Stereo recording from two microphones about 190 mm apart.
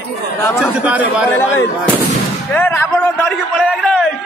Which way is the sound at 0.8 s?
5° right (ahead or behind).